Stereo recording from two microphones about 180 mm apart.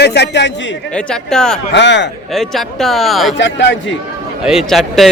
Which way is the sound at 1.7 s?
75° left (ahead or behind).